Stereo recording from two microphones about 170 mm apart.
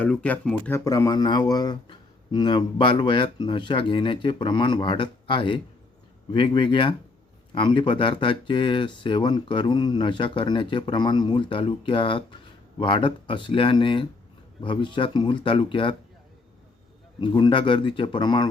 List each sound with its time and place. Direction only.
0.0 s speech: 10° left (ahead or behind)
0.9 s speech: 20° left (ahead or behind)
17.2 s speech: 25° left (ahead or behind)